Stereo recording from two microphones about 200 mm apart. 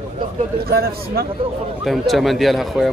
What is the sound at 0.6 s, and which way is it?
Speech, 50° right (ahead or behind).